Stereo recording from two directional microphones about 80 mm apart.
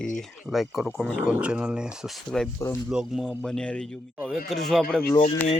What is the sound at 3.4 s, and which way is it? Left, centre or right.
Speech, centre.